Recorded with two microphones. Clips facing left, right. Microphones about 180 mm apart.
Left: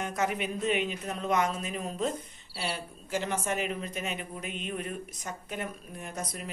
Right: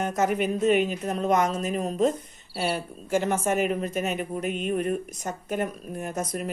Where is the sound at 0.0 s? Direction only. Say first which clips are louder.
Right 6 dB; 45° right (ahead or behind).